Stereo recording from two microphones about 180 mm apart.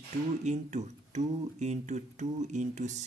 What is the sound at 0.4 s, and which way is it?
Speech, 40° right (ahead or behind).